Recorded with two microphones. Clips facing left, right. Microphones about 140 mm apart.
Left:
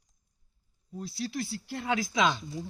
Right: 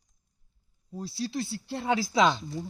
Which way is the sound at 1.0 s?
30° right (ahead or behind).